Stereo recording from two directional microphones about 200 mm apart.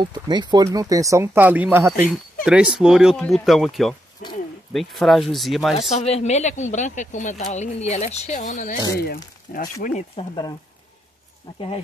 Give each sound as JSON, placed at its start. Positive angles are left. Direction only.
{"t": 0.0, "sound": "speech", "side_deg": -20}
{"t": 4.2, "sound": "a sound", "side_deg": 40}
{"t": 4.7, "sound": "speech", "side_deg": 0}
{"t": 5.8, "sound": "speech", "side_deg": 35}
{"t": 9.0, "sound": "speech", "side_deg": 50}